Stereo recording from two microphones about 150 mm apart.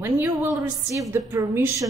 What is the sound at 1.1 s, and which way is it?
Speech, 15° right (ahead or behind).